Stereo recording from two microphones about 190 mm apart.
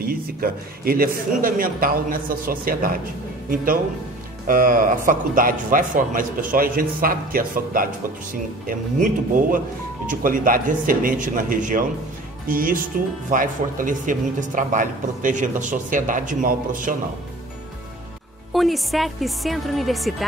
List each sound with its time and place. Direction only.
0.0 s speech: 50° right (ahead or behind)
18.5 s a woman's voice: centre (ahead or behind)